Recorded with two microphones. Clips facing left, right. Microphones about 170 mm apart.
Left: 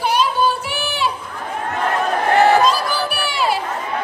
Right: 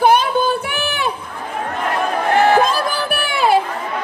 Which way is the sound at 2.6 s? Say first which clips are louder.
Left 1 dB; 55° right (ahead or behind).